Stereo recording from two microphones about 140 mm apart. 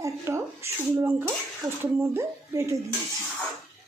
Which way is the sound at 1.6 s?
Centre (ahead or behind).